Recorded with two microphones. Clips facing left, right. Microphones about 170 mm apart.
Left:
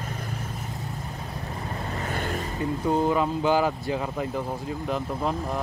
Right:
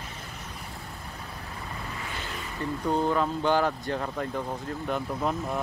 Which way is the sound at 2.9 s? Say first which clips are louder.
Left 2 dB; 10° left (ahead or behind).